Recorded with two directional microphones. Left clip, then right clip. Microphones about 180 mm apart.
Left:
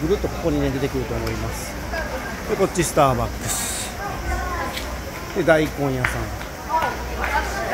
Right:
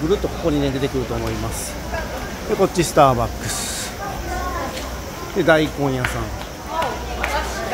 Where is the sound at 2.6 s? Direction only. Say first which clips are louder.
Right 4 dB; 15° right (ahead or behind).